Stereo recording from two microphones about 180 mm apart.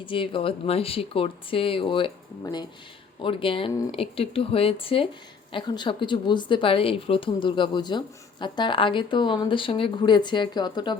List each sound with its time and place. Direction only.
0.0 s speech: 30° left (ahead or behind)